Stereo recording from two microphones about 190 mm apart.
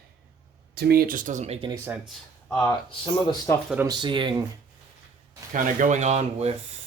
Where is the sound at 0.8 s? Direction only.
55° right (ahead or behind); by 1.7 s 30° right (ahead or behind).